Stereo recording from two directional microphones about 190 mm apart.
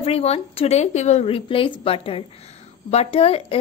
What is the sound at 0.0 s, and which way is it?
A woman's voice, 30° left (ahead or behind).